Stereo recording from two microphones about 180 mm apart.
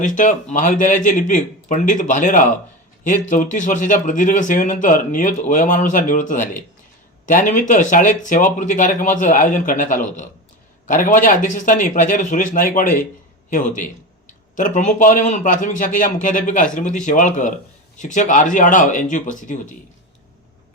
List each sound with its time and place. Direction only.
0.0 s speech: 45° left (ahead or behind)